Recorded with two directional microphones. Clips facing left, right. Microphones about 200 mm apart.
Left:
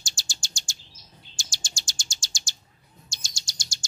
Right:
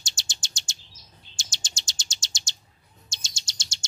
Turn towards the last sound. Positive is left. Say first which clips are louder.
# left 1 dB
turn(degrees=-25)  # may be behind; listen again after turning